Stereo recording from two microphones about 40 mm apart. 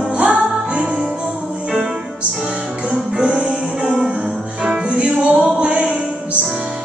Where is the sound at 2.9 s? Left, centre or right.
Right.